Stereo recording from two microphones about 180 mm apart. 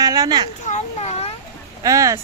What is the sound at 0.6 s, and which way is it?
Speech, 40° left (ahead or behind).